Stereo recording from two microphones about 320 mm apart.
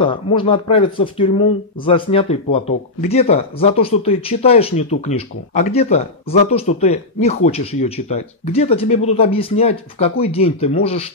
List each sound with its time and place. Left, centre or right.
0.0 s speech: centre